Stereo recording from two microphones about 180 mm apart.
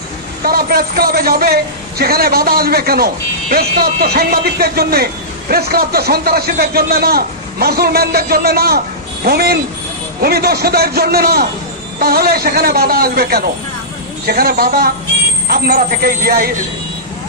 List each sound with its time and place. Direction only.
0.5 s speech: 55° right (ahead or behind)